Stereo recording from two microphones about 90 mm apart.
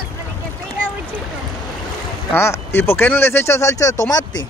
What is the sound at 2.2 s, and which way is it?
Speech, 30° left (ahead or behind).